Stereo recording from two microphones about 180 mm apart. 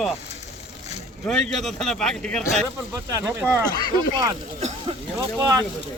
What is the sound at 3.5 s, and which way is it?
Speech, 20° left (ahead or behind).